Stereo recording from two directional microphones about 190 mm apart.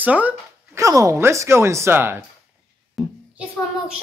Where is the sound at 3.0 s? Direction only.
Centre (ahead or behind).